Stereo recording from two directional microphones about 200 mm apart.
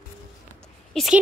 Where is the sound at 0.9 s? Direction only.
Centre (ahead or behind).